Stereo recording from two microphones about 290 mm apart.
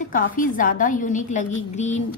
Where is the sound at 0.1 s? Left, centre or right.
Left.